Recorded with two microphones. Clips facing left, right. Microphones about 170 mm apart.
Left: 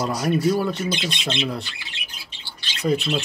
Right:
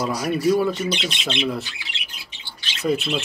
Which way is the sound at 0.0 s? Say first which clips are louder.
Even; centre (ahead or behind).